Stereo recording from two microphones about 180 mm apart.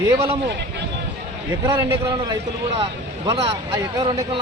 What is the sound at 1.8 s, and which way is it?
Speech, 25° right (ahead or behind).